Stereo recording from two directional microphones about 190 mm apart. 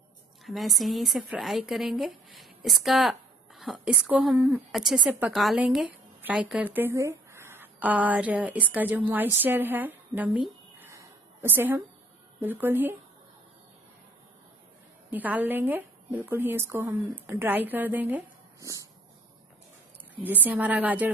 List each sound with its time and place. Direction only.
0.5 s a woman's voice: centre (ahead or behind)
15.0 s a woman's voice: 10° right (ahead or behind)
18.6 s dog: 15° right (ahead or behind)
20.4 s a woman's voice: 10° right (ahead or behind)